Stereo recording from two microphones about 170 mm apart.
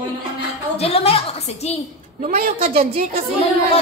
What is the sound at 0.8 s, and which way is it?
A woman's voice, 35° left (ahead or behind).